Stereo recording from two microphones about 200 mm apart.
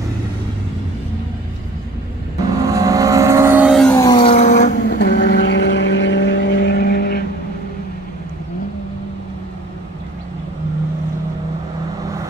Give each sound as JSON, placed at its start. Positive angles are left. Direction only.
{"t": 2.6, "sound": "vehicle", "side_deg": -15}
{"t": 3.8, "sound": "vehicle", "side_deg": 15}
{"t": 5.0, "sound": "vehicle", "side_deg": 55}